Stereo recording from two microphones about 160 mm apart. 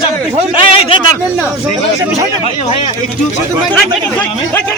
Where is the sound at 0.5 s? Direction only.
35° left (ahead or behind).